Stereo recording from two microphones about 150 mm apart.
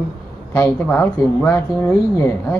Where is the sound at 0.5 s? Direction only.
15° left (ahead or behind).